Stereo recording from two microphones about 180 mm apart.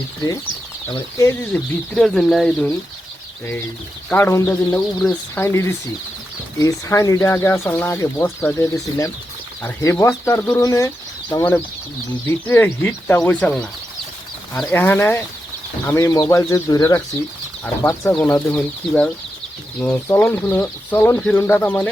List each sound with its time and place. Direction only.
1.2 s speech: 10° left (ahead or behind)
4.1 s speech: 15° left (ahead or behind)
18.1 s speech: 10° left (ahead or behind)